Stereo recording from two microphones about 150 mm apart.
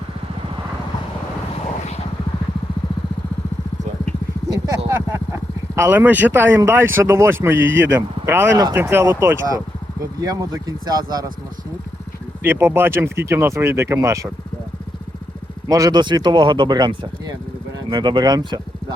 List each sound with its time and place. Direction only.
4.4 s a sound: 25° right (ahead or behind)
5.7 s speech: 15° right (ahead or behind)
8.5 s speech: 25° right (ahead or behind)
8.8 s speech: 15° right (ahead or behind)
12.4 s speech: 15° right (ahead or behind)
15.7 s speech: 25° right (ahead or behind)